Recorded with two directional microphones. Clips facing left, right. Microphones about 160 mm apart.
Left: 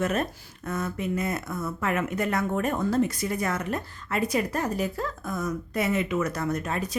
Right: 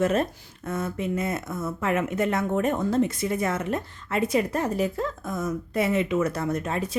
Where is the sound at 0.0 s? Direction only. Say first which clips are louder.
Right 4 dB; 30° right (ahead or behind).